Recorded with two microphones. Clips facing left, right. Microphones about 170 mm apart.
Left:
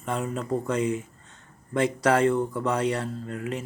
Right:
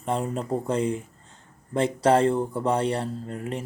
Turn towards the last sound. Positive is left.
turn(degrees=-30)  # may be behind; listen again after turning